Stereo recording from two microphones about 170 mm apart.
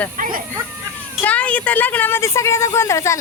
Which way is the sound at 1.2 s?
10° left (ahead or behind).